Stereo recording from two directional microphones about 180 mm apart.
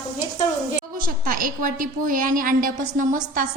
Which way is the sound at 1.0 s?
50° right (ahead or behind).